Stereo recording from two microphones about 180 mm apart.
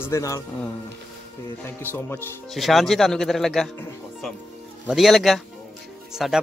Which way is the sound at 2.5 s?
Centre (ahead or behind).